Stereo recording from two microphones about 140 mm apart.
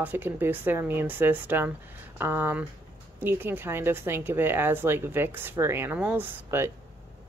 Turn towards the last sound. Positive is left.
turn(degrees=-15)  # may be behind; listen again after turning